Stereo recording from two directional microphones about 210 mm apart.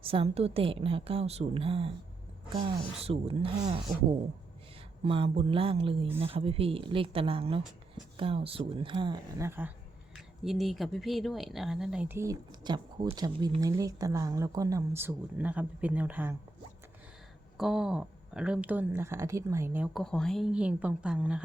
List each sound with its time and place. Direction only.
0.0 s a woman's voice: 25° right (ahead or behind)
5.0 s a woman's voice: 25° right (ahead or behind); by 16.3 s 5° right (ahead or behind)
17.6 s speech: 5° right (ahead or behind)